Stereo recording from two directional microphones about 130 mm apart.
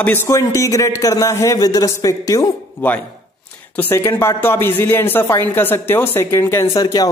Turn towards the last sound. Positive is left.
turn(degrees=30)  # may be behind; listen again after turning